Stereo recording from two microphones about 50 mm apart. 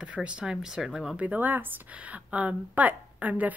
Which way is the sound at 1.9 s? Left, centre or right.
Right.